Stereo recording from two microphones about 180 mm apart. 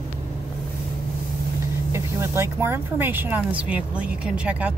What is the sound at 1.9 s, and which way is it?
Speech, 15° right (ahead or behind).